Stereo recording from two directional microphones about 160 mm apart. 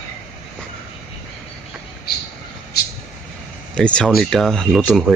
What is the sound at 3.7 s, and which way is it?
Speech, 5° left (ahead or behind).